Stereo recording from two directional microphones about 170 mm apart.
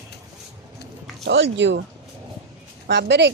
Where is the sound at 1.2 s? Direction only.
90° right.